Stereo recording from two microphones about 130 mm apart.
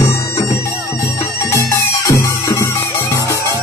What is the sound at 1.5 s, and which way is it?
Music, 25° left (ahead or behind).